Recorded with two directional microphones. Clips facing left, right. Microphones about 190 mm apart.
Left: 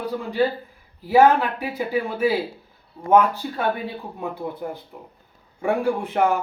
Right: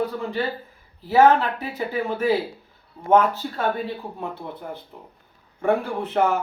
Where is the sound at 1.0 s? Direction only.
10° left (ahead or behind).